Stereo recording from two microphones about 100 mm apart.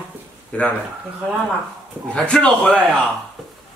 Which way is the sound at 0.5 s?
15° left (ahead or behind).